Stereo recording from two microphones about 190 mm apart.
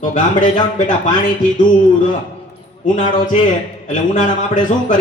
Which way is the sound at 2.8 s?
45° left (ahead or behind).